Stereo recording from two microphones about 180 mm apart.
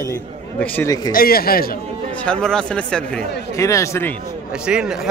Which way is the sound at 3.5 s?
15° left (ahead or behind).